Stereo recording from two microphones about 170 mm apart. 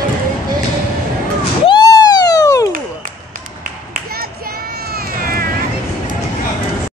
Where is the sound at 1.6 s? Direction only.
25° left (ahead or behind).